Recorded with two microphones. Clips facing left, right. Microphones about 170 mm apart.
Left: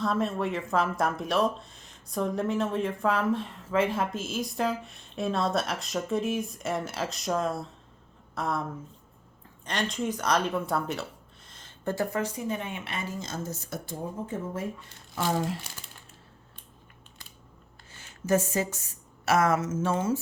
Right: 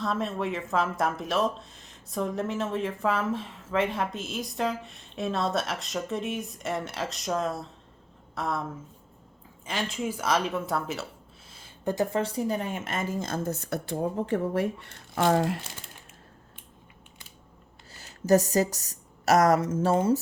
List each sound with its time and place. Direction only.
0.0 s speech: centre (ahead or behind)
9.6 s speech: 5° right (ahead or behind)
11.4 s a sound: 10° right (ahead or behind)
12.2 s speech: 35° right (ahead or behind); by 15.6 s 60° right (ahead or behind)
17.9 s speech: 40° right (ahead or behind)